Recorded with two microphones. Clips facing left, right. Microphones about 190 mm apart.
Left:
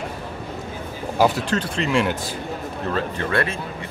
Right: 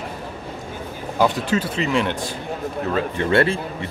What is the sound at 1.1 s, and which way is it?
Speech, 5° left (ahead or behind).